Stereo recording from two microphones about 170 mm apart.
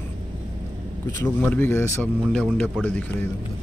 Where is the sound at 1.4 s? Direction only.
10° left (ahead or behind).